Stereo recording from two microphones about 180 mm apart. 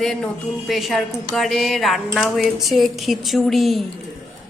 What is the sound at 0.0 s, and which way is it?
Speech, 5° left (ahead or behind).